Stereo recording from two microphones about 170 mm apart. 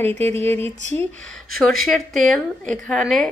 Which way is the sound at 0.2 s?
15° left (ahead or behind).